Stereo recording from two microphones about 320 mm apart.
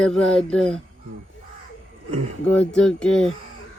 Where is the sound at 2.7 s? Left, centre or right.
Centre.